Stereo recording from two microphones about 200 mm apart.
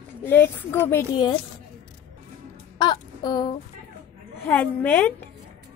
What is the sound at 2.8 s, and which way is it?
Music, 20° left (ahead or behind).